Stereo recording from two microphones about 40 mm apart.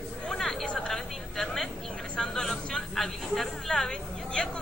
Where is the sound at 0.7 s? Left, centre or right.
Centre.